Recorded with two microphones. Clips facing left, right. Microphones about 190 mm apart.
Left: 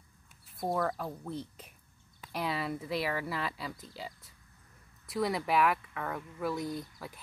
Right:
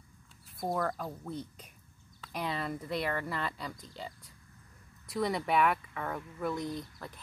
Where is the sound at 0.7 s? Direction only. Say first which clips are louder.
Left 2 dB; 5° left (ahead or behind).